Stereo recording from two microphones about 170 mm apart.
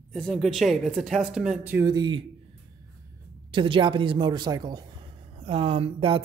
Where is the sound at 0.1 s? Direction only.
5° left (ahead or behind).